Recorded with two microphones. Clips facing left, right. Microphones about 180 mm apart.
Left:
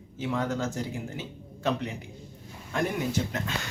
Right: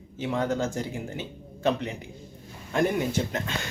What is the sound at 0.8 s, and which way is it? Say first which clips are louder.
Speech: right 2 dB; centre (ahead or behind).